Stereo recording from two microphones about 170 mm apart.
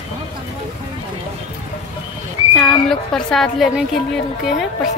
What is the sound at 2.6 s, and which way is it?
A woman's voice, centre (ahead or behind).